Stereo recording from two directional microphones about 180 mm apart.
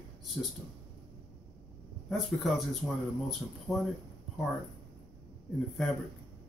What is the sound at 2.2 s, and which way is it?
A man's voice, centre (ahead or behind).